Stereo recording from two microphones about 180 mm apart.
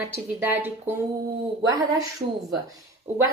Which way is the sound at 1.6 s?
20° right (ahead or behind).